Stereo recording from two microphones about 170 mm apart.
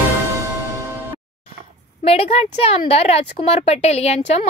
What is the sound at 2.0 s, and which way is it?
A woman's voice, 35° left (ahead or behind).